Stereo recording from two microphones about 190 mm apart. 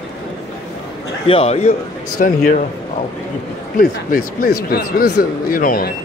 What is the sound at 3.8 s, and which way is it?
Speech, 50° left (ahead or behind).